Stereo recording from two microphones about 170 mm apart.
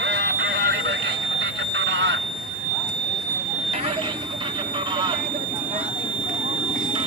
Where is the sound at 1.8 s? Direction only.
90° right.